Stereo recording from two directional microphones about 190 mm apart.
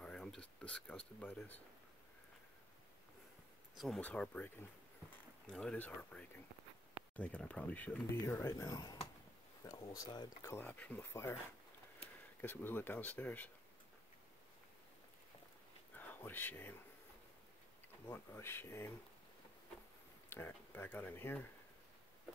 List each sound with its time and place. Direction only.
0.0 s a sound: 5° left (ahead or behind)
3.7 s speech: centre (ahead or behind)
12.4 s speech: 10° left (ahead or behind)
16.0 s speech: 10° left (ahead or behind)
18.0 s speech: 10° left (ahead or behind)
20.2 s speech: 10° left (ahead or behind)